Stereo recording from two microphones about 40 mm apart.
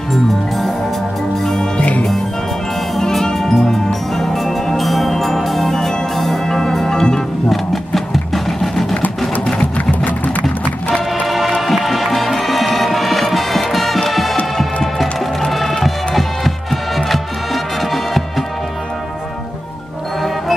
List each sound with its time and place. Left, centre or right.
0.1 s music: centre
3.0 s music: centre
7.4 s a sound: centre
9.6 s music: left
11.2 s music: centre